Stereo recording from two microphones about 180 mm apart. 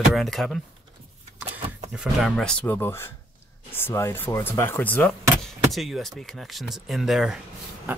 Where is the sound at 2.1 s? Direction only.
Centre (ahead or behind).